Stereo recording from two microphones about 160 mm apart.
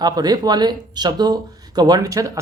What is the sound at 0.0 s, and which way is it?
Speech, 25° right (ahead or behind).